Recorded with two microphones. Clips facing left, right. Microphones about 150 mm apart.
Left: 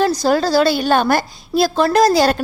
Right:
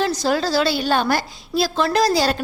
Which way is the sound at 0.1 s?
40° left (ahead or behind).